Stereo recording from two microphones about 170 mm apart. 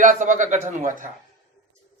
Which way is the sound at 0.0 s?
50° right (ahead or behind).